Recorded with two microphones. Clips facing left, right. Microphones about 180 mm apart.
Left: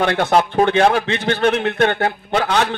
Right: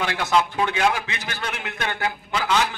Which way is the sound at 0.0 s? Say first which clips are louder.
Left 6 dB; 55° left (ahead or behind).